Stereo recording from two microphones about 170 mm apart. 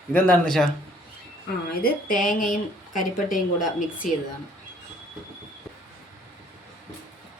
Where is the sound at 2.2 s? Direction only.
50° left (ahead or behind).